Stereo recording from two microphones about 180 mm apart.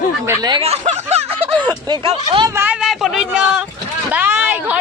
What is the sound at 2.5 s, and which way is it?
Speech, 10° right (ahead or behind).